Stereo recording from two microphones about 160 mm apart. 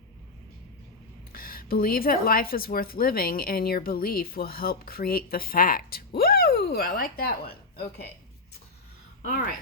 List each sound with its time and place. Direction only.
1.3 s a woman's voice: 65° left (ahead or behind)
9.2 s a woman's voice: 60° left (ahead or behind)